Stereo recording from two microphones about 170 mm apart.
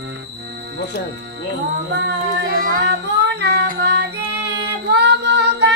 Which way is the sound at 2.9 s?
85° right.